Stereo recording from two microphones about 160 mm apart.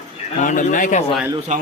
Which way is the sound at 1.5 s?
50° right (ahead or behind).